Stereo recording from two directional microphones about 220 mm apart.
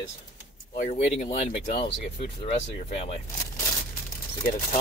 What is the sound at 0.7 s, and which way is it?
Speech, 35° left (ahead or behind).